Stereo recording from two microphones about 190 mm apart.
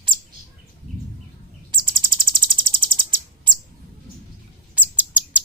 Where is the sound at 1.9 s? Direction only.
25° right (ahead or behind).